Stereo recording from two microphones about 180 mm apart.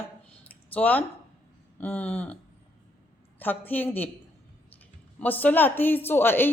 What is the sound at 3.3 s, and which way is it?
Speech, 10° left (ahead or behind).